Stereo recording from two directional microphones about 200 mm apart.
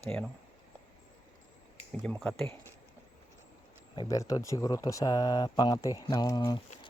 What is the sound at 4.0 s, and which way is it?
Speech, 15° left (ahead or behind).